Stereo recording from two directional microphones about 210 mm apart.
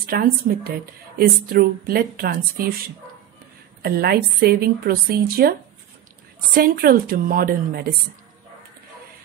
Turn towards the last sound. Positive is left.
turn(degrees=-45)  # may be behind; listen again after turning